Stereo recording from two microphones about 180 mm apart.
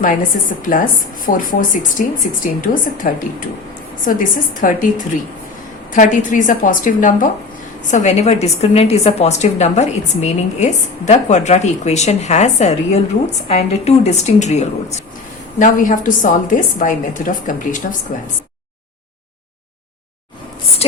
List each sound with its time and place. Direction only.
0.0 s a woman's voice: 50° left (ahead or behind)